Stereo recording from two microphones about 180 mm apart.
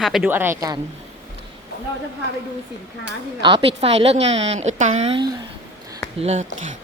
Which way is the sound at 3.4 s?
30° right (ahead or behind).